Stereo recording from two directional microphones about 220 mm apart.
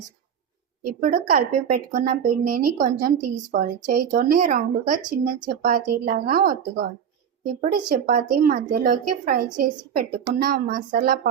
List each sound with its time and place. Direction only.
0.9 s a woman's voice: 40° right (ahead or behind)